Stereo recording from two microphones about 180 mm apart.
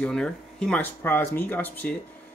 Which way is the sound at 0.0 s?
5° left (ahead or behind).